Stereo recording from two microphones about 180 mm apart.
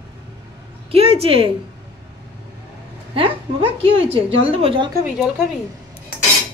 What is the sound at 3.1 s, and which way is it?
A woman's voice, 30° right (ahead or behind).